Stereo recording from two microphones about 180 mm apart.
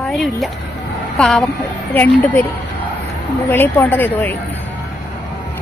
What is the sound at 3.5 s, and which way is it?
Speech, 10° left (ahead or behind).